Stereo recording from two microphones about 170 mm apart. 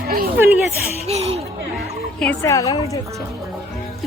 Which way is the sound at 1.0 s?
40° right (ahead or behind).